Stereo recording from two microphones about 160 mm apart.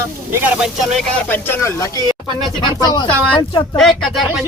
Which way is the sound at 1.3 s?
20° left (ahead or behind).